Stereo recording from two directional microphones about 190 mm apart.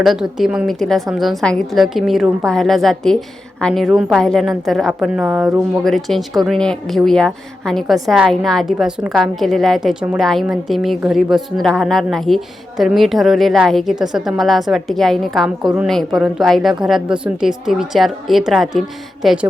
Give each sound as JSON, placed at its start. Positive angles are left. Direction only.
{"t": 0.0, "sound": "speech", "side_deg": 0}